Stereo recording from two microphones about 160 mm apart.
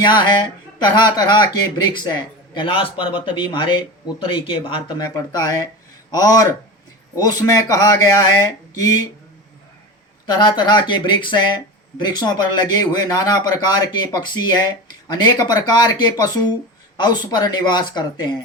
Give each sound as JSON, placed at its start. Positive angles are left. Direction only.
{"t": 0.0, "sound": "speech", "side_deg": 30}
{"t": 5.1, "sound": "speech", "side_deg": 25}
{"t": 10.2, "sound": "speech", "side_deg": 30}